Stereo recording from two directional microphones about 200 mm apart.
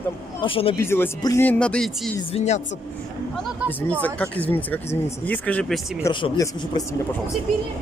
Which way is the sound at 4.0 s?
10° left (ahead or behind).